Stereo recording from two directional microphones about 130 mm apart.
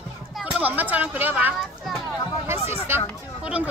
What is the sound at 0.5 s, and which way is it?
Speech, 10° right (ahead or behind).